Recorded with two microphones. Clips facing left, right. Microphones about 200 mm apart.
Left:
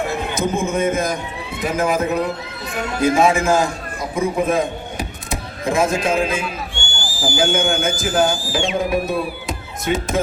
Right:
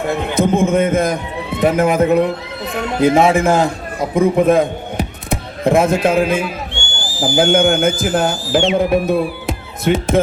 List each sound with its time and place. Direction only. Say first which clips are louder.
0.1 s a sound: right 6 dB; 55° right (ahead or behind)
1.5 s a man's voice: right 6 dB; 55° right (ahead or behind)
6.7 s owl: right 2 dB; 20° right (ahead or behind)
7.3 s speech: right 6 dB; 60° right (ahead or behind)